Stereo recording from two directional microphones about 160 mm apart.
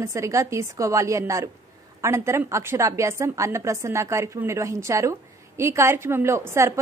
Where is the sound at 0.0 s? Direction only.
20° right (ahead or behind).